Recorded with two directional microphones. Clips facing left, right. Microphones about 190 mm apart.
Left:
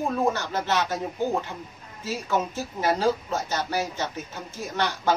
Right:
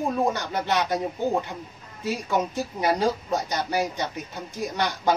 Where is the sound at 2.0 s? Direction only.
15° right (ahead or behind).